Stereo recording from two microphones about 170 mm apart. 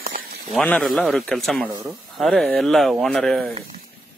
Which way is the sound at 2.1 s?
Centre (ahead or behind).